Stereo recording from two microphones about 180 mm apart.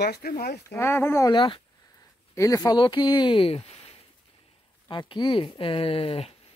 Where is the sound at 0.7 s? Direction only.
15° left (ahead or behind); by 6.3 s 30° left (ahead or behind).